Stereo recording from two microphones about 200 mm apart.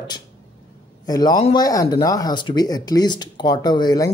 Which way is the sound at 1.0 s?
20° left (ahead or behind).